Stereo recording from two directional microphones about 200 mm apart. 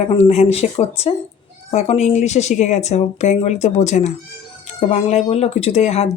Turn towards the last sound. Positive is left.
turn(degrees=35)  # may be behind; listen again after turning